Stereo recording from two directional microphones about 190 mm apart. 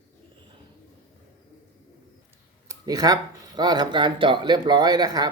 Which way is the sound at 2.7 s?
20° right (ahead or behind).